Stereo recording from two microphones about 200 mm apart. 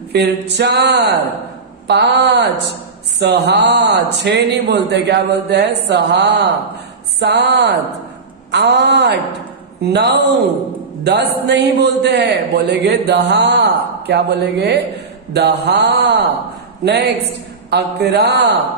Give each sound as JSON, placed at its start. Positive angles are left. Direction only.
{"t": 0.1, "sound": "a man's voice", "side_deg": -55}
{"t": 11.4, "sound": "a man's voice", "side_deg": -55}